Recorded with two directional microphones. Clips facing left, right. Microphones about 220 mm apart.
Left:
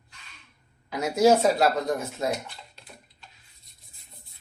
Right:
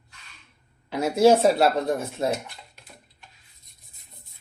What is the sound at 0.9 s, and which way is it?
Speech, 30° right (ahead or behind).